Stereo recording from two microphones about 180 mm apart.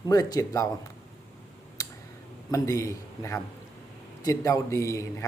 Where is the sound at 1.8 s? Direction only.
20° left (ahead or behind).